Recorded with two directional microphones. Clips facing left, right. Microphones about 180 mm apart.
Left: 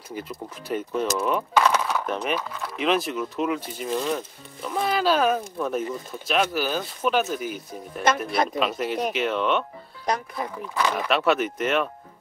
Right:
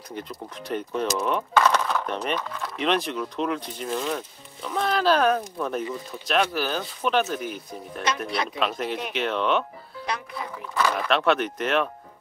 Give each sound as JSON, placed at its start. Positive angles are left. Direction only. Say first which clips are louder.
{"t": 0.1, "sound": "speech", "louder": "left 1 dB", "side_deg": 5}
{"t": 1.5, "sound": "a sound", "louder": "right 1 dB", "side_deg": 10}
{"t": 2.1, "sound": "speech", "louder": "left 1 dB", "side_deg": 5}
{"t": 10.1, "sound": "speech", "louder": "left 5 dB", "side_deg": 40}
{"t": 10.7, "sound": "speech", "louder": "right 1 dB", "side_deg": 10}